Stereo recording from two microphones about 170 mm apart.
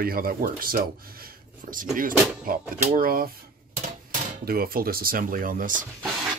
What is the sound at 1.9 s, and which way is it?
Speech, 55° right (ahead or behind).